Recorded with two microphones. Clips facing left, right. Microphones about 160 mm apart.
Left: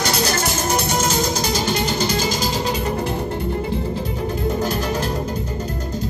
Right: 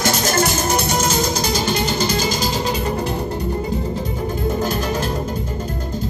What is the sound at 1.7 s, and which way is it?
Music, 35° right (ahead or behind).